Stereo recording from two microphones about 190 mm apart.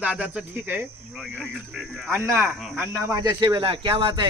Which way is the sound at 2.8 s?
15° right (ahead or behind).